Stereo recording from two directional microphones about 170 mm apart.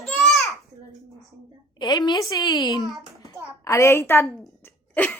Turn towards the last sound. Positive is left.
turn(degrees=10)  # may be behind; listen again after turning